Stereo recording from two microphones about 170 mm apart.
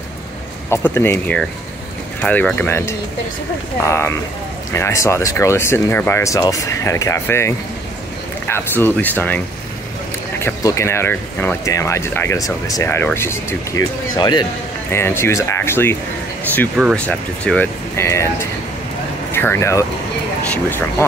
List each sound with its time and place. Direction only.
0.7 s speech: 15° left (ahead or behind)
10.4 s speech: 15° left (ahead or behind)
14.1 s speech: 25° left (ahead or behind)
14.9 s speech: 15° left (ahead or behind)
19.3 s speech: 15° left (ahead or behind)